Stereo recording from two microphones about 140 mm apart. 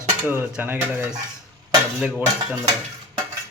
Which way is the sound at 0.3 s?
15° right (ahead or behind).